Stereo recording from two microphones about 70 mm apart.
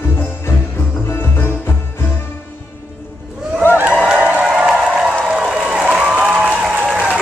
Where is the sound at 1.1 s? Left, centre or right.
Left.